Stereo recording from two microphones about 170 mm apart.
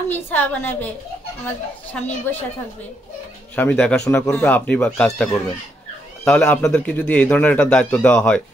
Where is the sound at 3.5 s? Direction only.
10° left (ahead or behind).